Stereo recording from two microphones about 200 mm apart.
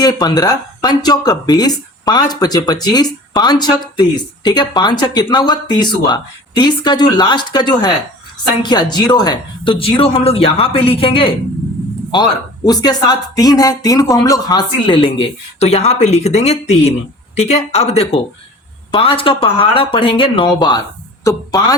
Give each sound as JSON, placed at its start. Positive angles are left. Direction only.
{"t": 0.0, "sound": "speech", "side_deg": 20}
{"t": 12.6, "sound": "speech", "side_deg": 20}